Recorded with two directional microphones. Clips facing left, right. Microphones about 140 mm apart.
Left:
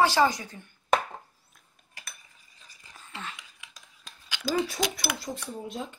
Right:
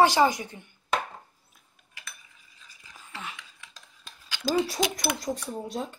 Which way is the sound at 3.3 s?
10° left (ahead or behind).